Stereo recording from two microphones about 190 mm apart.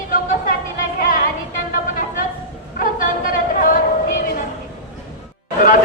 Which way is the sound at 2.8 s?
45° left (ahead or behind).